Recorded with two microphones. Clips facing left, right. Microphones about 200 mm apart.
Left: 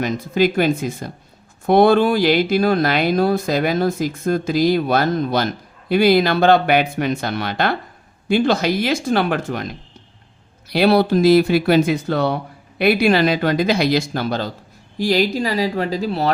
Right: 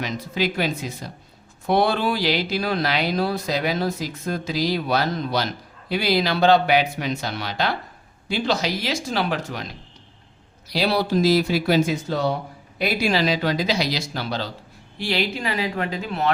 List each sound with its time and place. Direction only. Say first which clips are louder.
0.0 s speech: left 7 dB; 50° left (ahead or behind)